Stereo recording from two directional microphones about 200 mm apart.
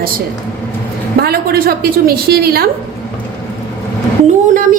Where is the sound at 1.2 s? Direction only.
50° right (ahead or behind).